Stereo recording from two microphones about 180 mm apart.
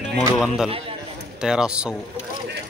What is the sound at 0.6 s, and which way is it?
Speech, 30° right (ahead or behind).